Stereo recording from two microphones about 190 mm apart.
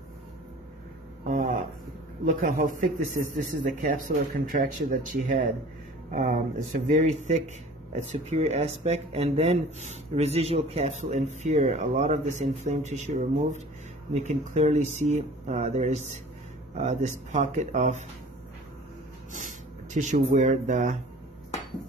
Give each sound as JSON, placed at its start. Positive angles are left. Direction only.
{"t": 1.2, "sound": "a sound", "side_deg": -40}
{"t": 2.2, "sound": "speech", "side_deg": -45}
{"t": 19.3, "sound": "speech", "side_deg": -40}